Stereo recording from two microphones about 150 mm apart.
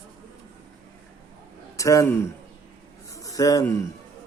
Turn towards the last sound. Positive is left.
turn(degrees=20)  # may be behind; listen again after turning